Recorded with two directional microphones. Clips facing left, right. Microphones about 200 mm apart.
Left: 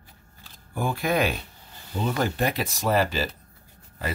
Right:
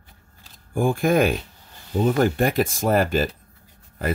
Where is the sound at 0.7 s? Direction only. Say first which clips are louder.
Right 6 dB; 50° right (ahead or behind).